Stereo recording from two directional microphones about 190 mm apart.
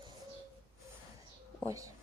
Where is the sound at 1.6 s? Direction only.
15° right (ahead or behind).